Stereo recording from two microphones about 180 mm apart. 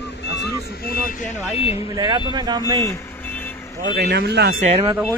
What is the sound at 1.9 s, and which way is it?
Speech, 25° right (ahead or behind).